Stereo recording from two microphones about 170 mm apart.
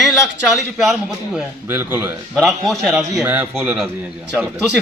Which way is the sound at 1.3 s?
15° right (ahead or behind).